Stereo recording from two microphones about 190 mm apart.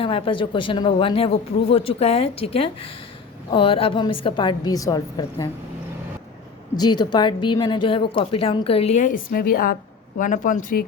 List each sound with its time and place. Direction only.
0.0 s a woman's voice: 30° left (ahead or behind)
6.7 s a woman's voice: 20° left (ahead or behind); by 10.8 s 45° left (ahead or behind)